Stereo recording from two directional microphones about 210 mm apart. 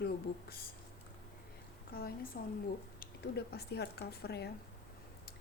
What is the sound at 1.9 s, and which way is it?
Speech, 45° left (ahead or behind).